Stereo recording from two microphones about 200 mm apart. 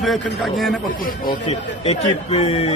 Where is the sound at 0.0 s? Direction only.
Centre (ahead or behind).